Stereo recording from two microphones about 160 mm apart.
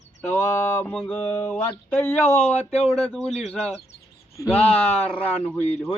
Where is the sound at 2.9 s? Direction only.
5° left (ahead or behind).